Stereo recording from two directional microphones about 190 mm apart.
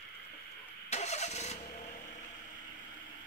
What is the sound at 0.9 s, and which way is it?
Vehicle, 35° left (ahead or behind).